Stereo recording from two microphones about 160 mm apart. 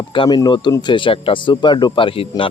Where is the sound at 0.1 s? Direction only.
30° left (ahead or behind).